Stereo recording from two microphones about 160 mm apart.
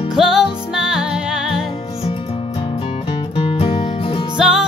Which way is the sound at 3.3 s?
35° left (ahead or behind).